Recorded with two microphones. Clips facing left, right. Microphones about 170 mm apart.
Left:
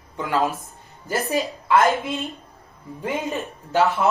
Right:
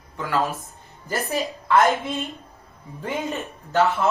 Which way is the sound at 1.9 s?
Centre (ahead or behind).